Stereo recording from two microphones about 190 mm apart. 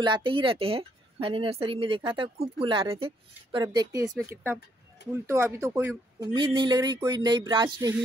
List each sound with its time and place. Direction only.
0.0 s speech: 25° right (ahead or behind)
4.1 s speech: centre (ahead or behind)
5.1 s speech: 15° right (ahead or behind)